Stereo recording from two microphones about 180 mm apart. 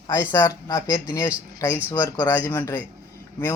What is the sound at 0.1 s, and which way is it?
Speech, 15° left (ahead or behind).